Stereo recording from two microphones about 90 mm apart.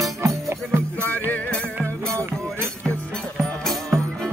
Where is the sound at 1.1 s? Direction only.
20° left (ahead or behind).